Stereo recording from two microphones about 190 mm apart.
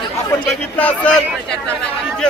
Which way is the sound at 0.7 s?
5° left (ahead or behind).